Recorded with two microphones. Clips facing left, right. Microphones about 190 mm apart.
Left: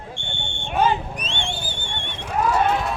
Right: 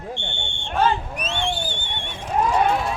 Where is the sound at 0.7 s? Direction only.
10° left (ahead or behind).